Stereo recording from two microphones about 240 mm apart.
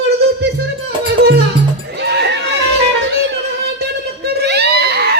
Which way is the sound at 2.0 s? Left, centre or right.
Right.